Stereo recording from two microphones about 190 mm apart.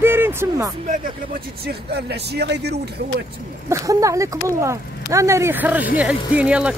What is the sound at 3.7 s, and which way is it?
Speech, 15° right (ahead or behind).